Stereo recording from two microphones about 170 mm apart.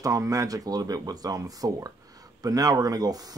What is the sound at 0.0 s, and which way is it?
Speech, 20° right (ahead or behind).